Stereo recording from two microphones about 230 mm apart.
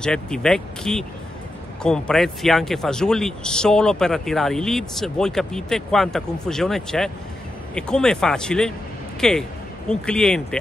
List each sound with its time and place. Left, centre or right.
0.0 s speech: centre